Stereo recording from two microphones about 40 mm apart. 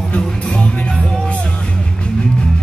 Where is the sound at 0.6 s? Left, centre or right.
Left.